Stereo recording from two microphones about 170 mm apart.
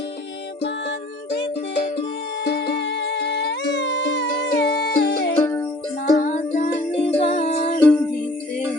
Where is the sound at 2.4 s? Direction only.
70° left (ahead or behind).